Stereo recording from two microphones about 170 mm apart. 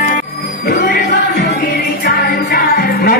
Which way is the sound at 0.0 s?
55° left (ahead or behind).